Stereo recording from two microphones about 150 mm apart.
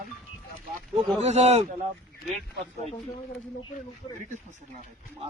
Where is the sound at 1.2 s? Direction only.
50° right (ahead or behind).